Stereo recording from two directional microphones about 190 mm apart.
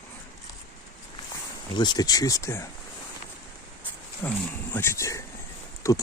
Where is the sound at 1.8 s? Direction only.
20° left (ahead or behind).